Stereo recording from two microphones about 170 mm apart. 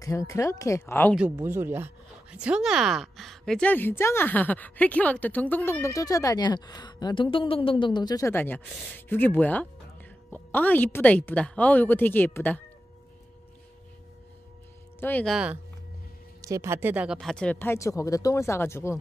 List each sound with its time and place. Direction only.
0.0 s a woman's voice: 20° left (ahead or behind)
1.1 s a woman's voice: 10° right (ahead or behind); by 12.6 s 10° left (ahead or behind)
15.0 s a woman's voice: 10° left (ahead or behind)
15.3 s speech: 5° right (ahead or behind)
16.3 s a woman's voice: 20° right (ahead or behind); by 18.9 s 15° left (ahead or behind)